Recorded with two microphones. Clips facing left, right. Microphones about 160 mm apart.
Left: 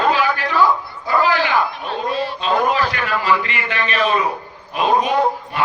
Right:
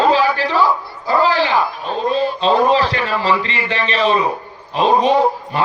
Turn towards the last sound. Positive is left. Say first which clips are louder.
# right 3 dB
turn(degrees=-30)  # may be behind; listen again after turning